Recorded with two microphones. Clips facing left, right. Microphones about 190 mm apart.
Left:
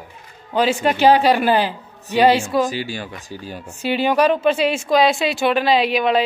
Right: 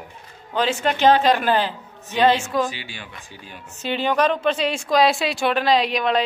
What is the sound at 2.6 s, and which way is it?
Speech, 40° left (ahead or behind).